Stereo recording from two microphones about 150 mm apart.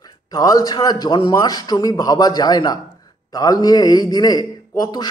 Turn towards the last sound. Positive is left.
turn(degrees=25)  # may be behind; listen again after turning